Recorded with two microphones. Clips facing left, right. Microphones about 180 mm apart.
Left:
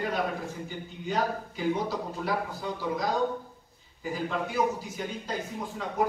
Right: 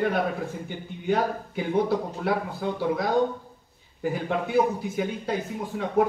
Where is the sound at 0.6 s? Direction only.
60° right (ahead or behind).